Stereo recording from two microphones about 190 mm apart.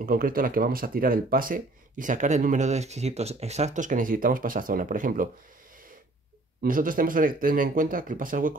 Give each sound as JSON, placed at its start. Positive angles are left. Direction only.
{"t": 0.0, "sound": "speech", "side_deg": -50}
{"t": 6.6, "sound": "speech", "side_deg": -45}